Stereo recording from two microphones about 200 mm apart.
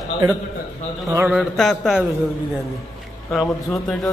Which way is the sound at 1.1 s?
10° right (ahead or behind).